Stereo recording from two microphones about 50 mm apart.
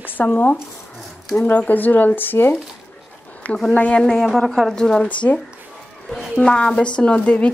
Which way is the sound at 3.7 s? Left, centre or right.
Left.